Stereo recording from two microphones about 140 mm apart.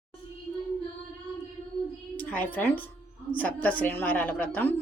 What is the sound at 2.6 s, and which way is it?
A woman's voice, 15° left (ahead or behind).